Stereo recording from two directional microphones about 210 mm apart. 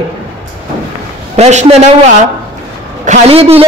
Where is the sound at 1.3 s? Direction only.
30° right (ahead or behind).